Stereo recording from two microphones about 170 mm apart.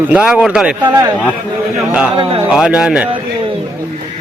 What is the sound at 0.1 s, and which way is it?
Speech, 5° right (ahead or behind).